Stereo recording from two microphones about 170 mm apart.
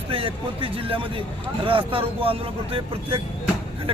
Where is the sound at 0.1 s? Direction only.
30° right (ahead or behind).